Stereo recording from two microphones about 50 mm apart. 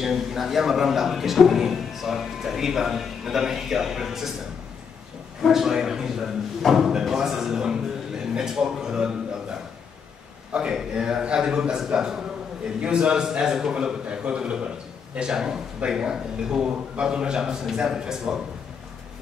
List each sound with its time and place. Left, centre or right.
0.0 s a man's voice: centre
5.4 s a man's voice: centre
10.5 s a man's voice: centre